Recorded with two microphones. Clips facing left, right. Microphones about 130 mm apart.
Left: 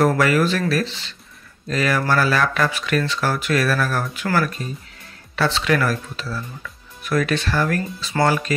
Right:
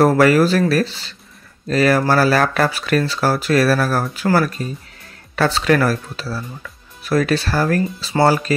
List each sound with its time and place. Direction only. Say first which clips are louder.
0.0 s speech: right 5 dB; 40° right (ahead or behind)